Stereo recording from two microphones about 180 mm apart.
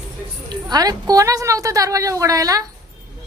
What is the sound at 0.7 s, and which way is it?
A woman's voice, 20° right (ahead or behind).